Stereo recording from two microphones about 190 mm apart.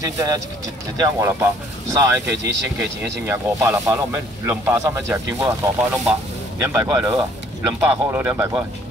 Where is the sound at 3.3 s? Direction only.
10° right (ahead or behind).